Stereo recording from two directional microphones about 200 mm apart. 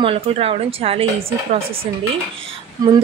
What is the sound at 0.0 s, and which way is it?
Speech, 30° right (ahead or behind).